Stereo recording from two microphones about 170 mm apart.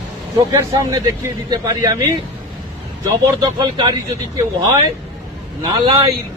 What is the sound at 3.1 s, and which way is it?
Speech, 20° right (ahead or behind).